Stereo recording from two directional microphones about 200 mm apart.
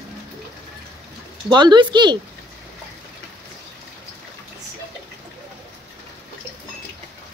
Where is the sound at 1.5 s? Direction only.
20° right (ahead or behind).